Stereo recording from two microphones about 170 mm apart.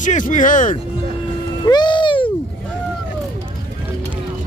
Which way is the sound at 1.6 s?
25° left (ahead or behind).